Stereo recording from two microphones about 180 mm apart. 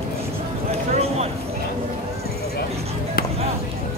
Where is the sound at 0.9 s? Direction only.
35° right (ahead or behind).